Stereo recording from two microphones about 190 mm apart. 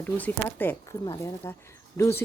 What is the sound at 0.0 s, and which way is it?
Speech, 10° left (ahead or behind).